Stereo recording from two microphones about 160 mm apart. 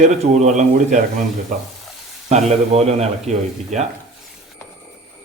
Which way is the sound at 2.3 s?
45° right (ahead or behind).